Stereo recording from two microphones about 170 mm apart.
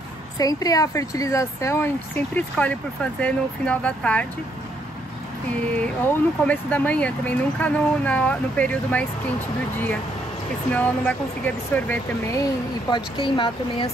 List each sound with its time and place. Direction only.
0.4 s speech: 20° left (ahead or behind)
5.5 s speech: 10° left (ahead or behind)
10.7 s speech: 10° left (ahead or behind)
12.9 s speech: 30° left (ahead or behind)